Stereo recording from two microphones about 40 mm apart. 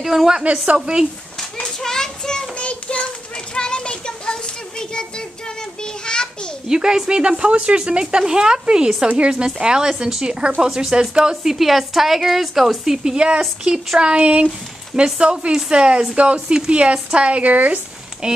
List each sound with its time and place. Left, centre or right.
0.0 s speech: centre
0.3 s a woman's voice: right
1.8 s child singing: centre
2.5 s child singing: left
3.5 s a sound: left
6.0 s a sound: left
6.7 s a woman's voice: centre
11.5 s a woman's voice: centre; by 17.7 s right
18.2 s a woman's voice: right